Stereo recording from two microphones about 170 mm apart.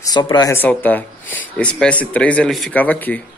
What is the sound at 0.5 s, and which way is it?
Speech, 10° left (ahead or behind).